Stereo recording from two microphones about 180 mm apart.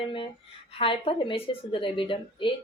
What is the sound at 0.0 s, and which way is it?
A woman's voice, 30° left (ahead or behind).